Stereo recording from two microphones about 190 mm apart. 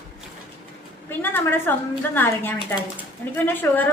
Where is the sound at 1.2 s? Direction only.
10° left (ahead or behind).